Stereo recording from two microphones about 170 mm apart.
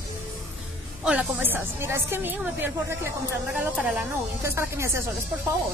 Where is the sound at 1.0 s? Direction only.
10° right (ahead or behind).